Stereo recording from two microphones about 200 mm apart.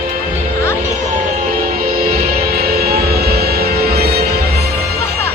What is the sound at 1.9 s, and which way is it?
Music, 50° right (ahead or behind).